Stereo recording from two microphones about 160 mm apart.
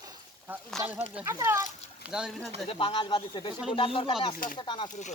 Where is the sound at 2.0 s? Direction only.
5° right (ahead or behind).